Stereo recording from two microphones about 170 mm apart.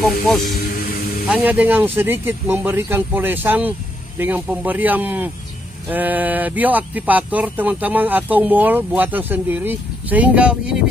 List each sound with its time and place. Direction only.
0.0 s speech: centre (ahead or behind)
0.7 s music: 55° left (ahead or behind)
1.2 s speech: 10° right (ahead or behind)